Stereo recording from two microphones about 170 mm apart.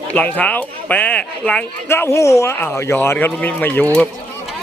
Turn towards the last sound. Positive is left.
turn(degrees=10)  # may be behind; listen again after turning